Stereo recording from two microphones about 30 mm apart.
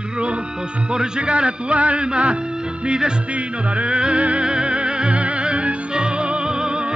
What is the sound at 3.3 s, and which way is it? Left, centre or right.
Yodeling, right.